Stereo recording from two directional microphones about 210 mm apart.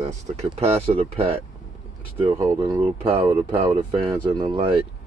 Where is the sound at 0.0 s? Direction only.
30° right (ahead or behind).